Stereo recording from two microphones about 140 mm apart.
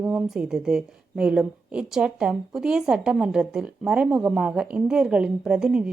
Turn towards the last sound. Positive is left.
turn(degrees=-5)  # may be behind; listen again after turning